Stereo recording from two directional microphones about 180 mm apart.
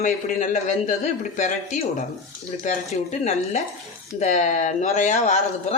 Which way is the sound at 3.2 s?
40° left (ahead or behind).